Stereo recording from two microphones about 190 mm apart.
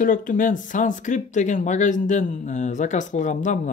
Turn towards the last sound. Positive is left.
turn(degrees=40)  # may be behind; listen again after turning